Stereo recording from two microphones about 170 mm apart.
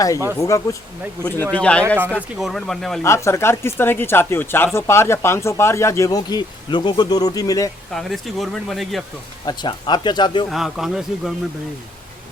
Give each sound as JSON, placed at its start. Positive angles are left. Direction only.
{"t": 0.3, "sound": "speech", "side_deg": 15}
{"t": 2.0, "sound": "speech", "side_deg": -10}
{"t": 3.0, "sound": "speech", "side_deg": 15}
{"t": 7.9, "sound": "speech", "side_deg": 0}
{"t": 9.5, "sound": "speech", "side_deg": 25}
{"t": 10.5, "sound": "speech", "side_deg": 0}